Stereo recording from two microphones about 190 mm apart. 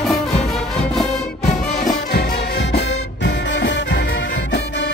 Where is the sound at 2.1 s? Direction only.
55° left (ahead or behind).